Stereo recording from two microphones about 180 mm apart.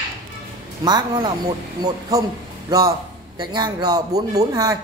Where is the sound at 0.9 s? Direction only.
25° right (ahead or behind).